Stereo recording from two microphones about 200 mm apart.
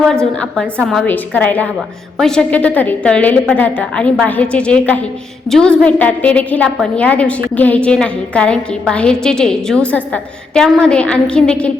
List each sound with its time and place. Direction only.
0.1 s a woman's voice: 5° left (ahead or behind)